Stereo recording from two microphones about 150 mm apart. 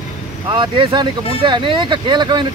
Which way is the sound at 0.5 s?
30° right (ahead or behind).